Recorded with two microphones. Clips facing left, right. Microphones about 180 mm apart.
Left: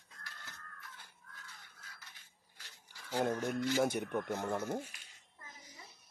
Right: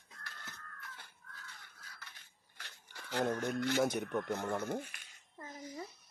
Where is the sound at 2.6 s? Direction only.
70° right (ahead or behind).